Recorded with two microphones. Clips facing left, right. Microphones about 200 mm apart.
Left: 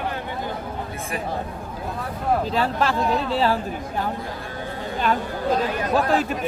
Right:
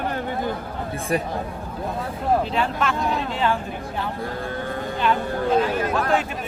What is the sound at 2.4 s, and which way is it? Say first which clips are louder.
Speech: left 1 dB; 35° left (ahead or behind).